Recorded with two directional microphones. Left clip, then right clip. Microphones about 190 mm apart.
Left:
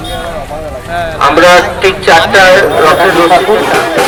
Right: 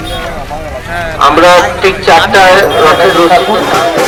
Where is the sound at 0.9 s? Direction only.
45° left (ahead or behind).